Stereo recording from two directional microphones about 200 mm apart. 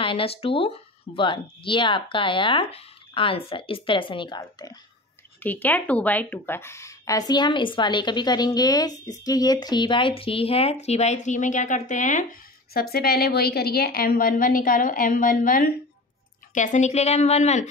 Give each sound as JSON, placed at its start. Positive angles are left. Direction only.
{"t": 0.0, "sound": "speech", "side_deg": 25}
{"t": 5.4, "sound": "a woman's voice", "side_deg": 10}